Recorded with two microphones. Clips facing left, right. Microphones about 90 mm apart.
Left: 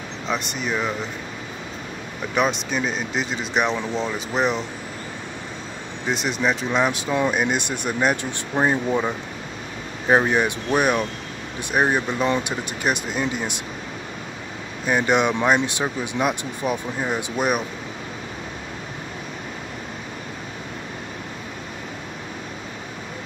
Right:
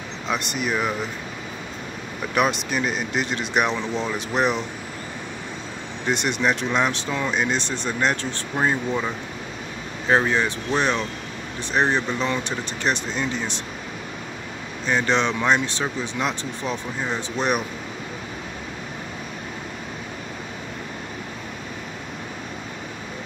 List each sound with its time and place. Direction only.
0.3 s speech: centre (ahead or behind)
2.3 s speech: centre (ahead or behind)
6.0 s speech: centre (ahead or behind)
14.9 s speech: 10° left (ahead or behind)